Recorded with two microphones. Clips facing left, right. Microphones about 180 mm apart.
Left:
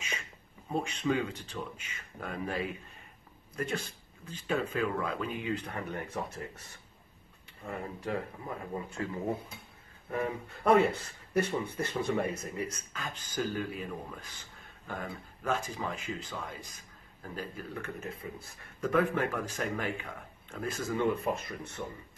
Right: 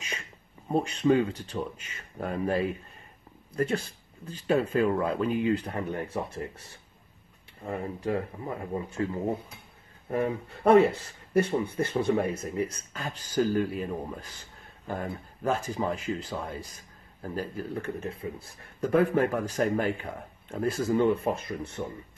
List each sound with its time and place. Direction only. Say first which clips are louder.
0.7 s speech: right 7 dB; 35° right (ahead or behind)
7.6 s speech: right 6 dB; 30° right (ahead or behind)